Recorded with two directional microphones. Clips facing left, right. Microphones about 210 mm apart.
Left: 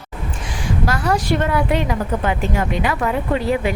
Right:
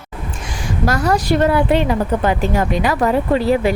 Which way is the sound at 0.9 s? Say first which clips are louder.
Right 4 dB; 40° right (ahead or behind).